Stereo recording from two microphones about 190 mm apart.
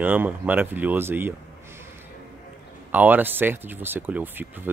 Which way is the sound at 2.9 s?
10° right (ahead or behind).